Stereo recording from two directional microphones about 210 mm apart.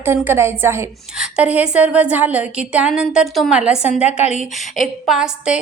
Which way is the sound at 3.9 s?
30° left (ahead or behind).